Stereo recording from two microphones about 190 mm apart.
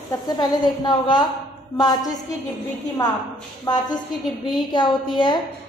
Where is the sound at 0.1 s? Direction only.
20° left (ahead or behind).